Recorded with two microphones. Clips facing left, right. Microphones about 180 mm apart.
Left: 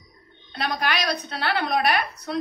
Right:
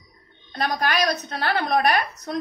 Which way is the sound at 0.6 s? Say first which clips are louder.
Right 3 dB; 45° right (ahead or behind).